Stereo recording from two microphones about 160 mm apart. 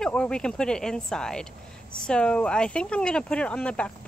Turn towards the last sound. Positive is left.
turn(degrees=5)  # may be behind; listen again after turning